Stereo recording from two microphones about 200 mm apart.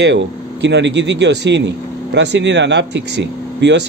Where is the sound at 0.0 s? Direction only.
60° right (ahead or behind).